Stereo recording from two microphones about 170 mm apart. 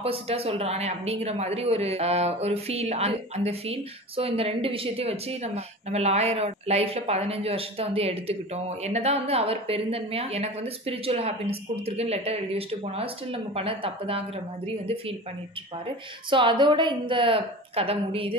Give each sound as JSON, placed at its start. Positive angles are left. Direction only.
{"t": 0.0, "sound": "speech", "side_deg": -35}
{"t": 16.3, "sound": "a woman's voice", "side_deg": -30}